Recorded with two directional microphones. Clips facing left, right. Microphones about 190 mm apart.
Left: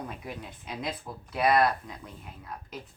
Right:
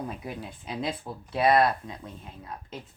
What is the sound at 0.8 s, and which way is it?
Speech, 30° right (ahead or behind).